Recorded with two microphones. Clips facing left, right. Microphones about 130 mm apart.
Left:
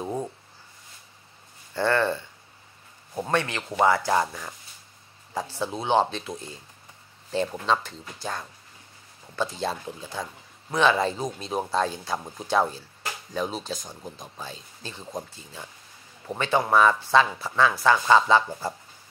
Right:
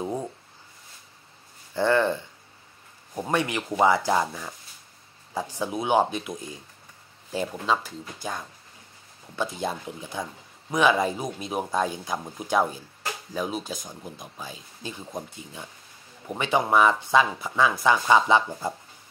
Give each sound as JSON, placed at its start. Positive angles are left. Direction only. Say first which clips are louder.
{"t": 1.7, "sound": "speech", "louder": "right 2 dB", "side_deg": -15}